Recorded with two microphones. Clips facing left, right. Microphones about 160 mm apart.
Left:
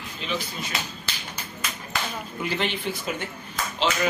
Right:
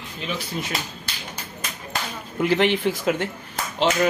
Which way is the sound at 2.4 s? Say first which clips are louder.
Right 9 dB; 75° right (ahead or behind).